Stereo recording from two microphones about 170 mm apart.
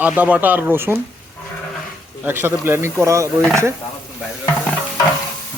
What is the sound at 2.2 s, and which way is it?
A man's voice, 15° right (ahead or behind).